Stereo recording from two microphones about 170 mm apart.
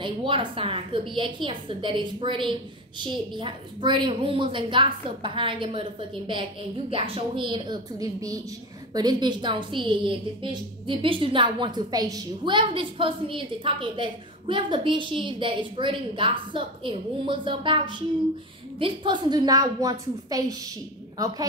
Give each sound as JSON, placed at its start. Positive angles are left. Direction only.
{"t": 0.0, "sound": "a woman's voice", "side_deg": -30}